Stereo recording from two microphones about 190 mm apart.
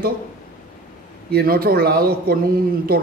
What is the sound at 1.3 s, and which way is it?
Speech, 50° right (ahead or behind).